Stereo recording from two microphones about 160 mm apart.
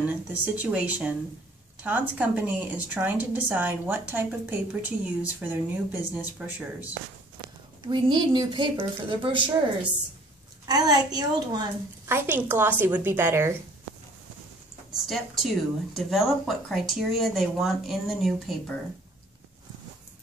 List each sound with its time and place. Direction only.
0.0 s a woman's voice: 10° right (ahead or behind)
7.8 s a woman's voice: 30° right (ahead or behind)
10.7 s a woman's voice: 25° right (ahead or behind)
12.1 s a woman's voice: 15° right (ahead or behind)
15.0 s speech: centre (ahead or behind)